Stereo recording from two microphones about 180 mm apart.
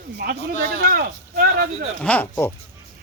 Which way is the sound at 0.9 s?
60° right (ahead or behind).